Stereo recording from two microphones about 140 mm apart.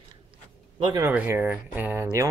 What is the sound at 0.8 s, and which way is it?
Speech, 35° right (ahead or behind).